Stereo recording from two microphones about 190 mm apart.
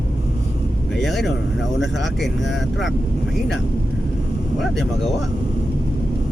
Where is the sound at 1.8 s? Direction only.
Centre (ahead or behind).